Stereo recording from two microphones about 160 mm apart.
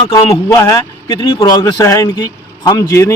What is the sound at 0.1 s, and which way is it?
A man's voice, 20° left (ahead or behind).